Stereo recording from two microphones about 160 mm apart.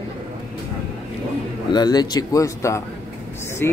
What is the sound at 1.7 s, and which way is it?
Speech, 25° left (ahead or behind).